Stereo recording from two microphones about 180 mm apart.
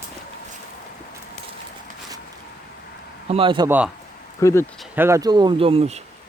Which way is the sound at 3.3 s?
30° right (ahead or behind).